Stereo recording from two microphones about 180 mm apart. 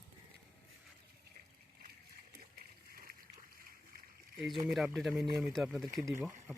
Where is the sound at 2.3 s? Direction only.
55° right (ahead or behind).